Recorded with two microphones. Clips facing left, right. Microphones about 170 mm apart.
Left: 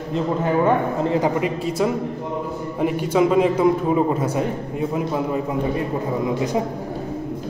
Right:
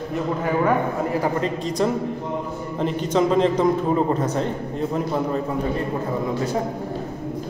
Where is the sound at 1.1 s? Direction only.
20° left (ahead or behind).